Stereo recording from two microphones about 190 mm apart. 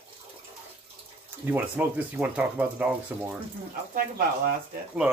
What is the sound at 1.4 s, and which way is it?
Speech, 10° right (ahead or behind).